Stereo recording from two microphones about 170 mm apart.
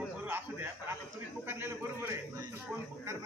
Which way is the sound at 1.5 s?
15° right (ahead or behind).